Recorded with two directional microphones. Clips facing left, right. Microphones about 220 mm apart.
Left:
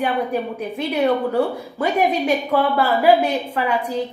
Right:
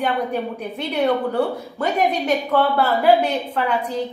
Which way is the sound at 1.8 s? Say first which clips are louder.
Left 2 dB; 10° left (ahead or behind).